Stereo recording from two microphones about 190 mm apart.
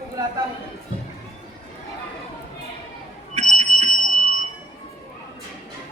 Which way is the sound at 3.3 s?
35° right (ahead or behind).